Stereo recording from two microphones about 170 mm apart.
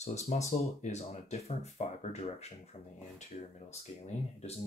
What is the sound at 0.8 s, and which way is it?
Speech, 40° left (ahead or behind).